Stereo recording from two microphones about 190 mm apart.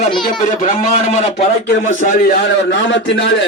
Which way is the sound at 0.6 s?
40° left (ahead or behind).